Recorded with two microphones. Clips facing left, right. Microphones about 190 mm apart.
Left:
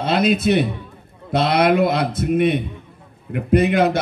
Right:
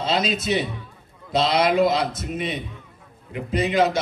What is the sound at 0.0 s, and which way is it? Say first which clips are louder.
A man's voice: left 6 dB; 60° left (ahead or behind).